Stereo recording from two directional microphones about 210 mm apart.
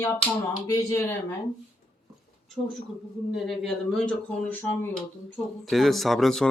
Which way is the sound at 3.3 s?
Centre (ahead or behind).